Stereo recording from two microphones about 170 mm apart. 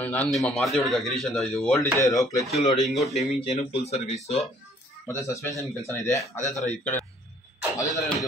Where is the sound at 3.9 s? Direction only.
40° left (ahead or behind).